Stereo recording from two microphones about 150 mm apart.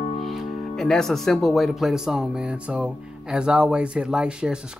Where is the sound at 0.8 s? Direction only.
5° left (ahead or behind).